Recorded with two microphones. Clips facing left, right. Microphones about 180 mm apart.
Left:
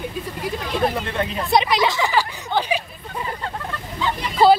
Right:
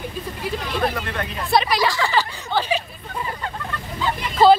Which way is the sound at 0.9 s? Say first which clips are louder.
Left 3 dB; 20° left (ahead or behind).